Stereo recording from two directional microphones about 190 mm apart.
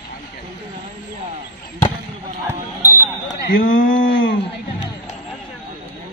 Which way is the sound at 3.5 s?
45° left (ahead or behind).